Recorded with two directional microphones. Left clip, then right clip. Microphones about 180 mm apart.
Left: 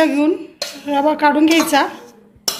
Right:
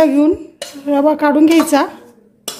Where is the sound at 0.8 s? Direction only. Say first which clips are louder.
Right 2 dB; 45° right (ahead or behind).